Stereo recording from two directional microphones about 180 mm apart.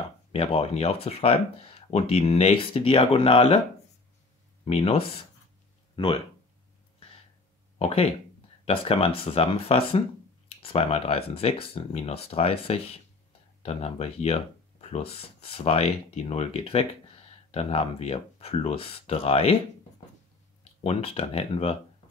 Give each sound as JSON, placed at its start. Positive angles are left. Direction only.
{"t": 0.3, "sound": "speech", "side_deg": 35}
{"t": 4.6, "sound": "speech", "side_deg": 35}
{"t": 7.8, "sound": "speech", "side_deg": 35}
{"t": 20.8, "sound": "speech", "side_deg": 30}